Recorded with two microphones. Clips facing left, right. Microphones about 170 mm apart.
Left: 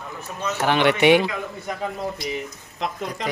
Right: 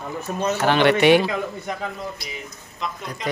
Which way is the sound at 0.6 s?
15° left (ahead or behind).